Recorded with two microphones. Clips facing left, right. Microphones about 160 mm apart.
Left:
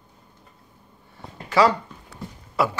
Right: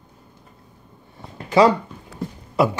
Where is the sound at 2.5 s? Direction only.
20° right (ahead or behind).